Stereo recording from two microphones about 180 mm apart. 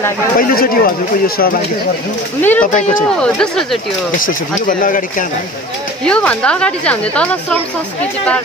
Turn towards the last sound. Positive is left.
turn(degrees=5)  # may be behind; listen again after turning